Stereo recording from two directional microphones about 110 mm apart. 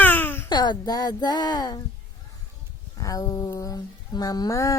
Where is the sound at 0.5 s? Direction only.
40° left (ahead or behind).